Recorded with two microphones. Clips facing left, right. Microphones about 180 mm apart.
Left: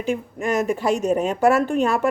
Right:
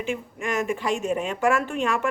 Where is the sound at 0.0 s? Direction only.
40° left (ahead or behind).